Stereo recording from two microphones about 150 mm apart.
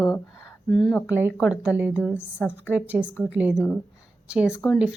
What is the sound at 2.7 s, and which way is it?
Speech, 10° right (ahead or behind).